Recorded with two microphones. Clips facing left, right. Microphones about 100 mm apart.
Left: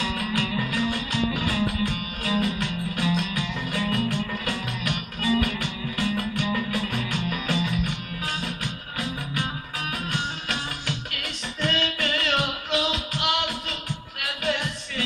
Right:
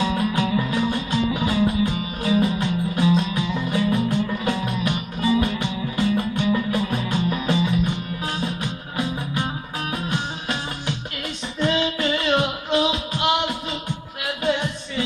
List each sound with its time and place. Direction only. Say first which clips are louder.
0.0 s music: right 6 dB; 25° right (ahead or behind)
8.9 s music: right 5 dB; 30° right (ahead or behind)
11.6 s music: right 5 dB; 25° right (ahead or behind)
14.4 s a sound: right 5 dB; 25° right (ahead or behind)